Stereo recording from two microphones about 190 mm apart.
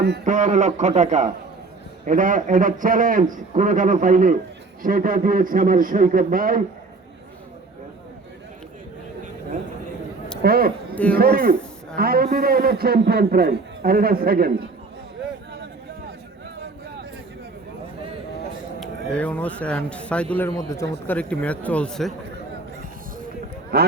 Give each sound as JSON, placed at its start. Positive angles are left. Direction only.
{"t": 0.3, "sound": "a man's voice", "side_deg": -40}
{"t": 10.4, "sound": "a man's voice", "side_deg": -55}
{"t": 18.8, "sound": "speech", "side_deg": 5}
{"t": 20.5, "sound": "speech", "side_deg": 15}
{"t": 23.7, "sound": "speech", "side_deg": -60}